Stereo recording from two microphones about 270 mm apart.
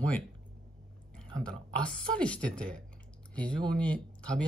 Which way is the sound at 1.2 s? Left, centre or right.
Centre.